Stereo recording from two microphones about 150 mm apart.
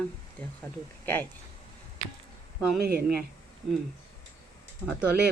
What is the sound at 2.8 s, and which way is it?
Speech, 90° right.